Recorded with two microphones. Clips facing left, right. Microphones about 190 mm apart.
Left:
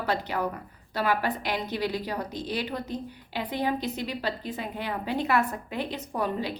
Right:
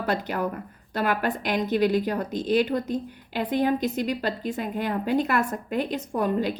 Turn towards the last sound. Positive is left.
turn(degrees=-45)  # may be behind; listen again after turning